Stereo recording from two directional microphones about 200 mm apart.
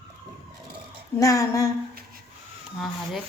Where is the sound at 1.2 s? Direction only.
15° left (ahead or behind).